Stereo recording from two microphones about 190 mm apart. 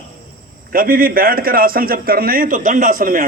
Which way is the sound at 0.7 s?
50° right (ahead or behind).